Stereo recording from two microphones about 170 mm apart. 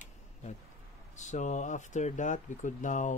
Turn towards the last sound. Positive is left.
turn(degrees=45)  # may be behind; listen again after turning